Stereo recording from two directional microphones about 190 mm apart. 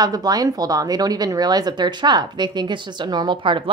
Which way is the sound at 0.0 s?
20° right (ahead or behind).